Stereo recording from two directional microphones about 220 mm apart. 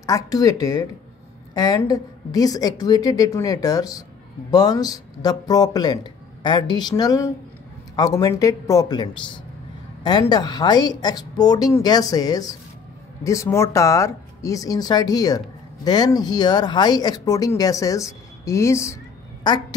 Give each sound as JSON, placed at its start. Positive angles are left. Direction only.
{"t": 0.0, "sound": "speech", "side_deg": 15}